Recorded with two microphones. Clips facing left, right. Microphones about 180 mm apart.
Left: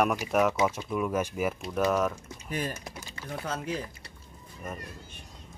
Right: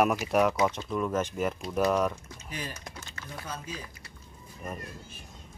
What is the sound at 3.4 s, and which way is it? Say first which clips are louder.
Speech: left 7 dB; 65° left (ahead or behind).